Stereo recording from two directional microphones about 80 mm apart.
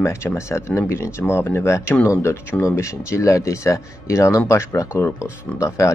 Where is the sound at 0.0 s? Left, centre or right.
Left.